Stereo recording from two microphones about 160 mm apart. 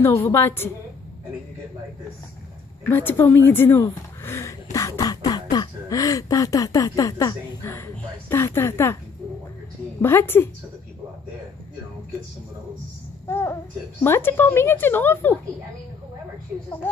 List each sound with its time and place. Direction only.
0.0 s speech: 15° left (ahead or behind)
2.9 s speech: 10° left (ahead or behind)
10.0 s speech: 15° left (ahead or behind)
13.3 s speech: 15° left (ahead or behind)